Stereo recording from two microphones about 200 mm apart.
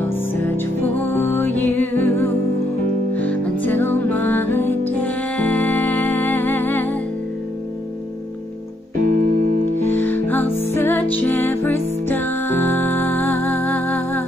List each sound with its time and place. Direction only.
0.1 s music: 10° left (ahead or behind)
9.0 s music: 45° right (ahead or behind)
9.8 s music: 10° left (ahead or behind)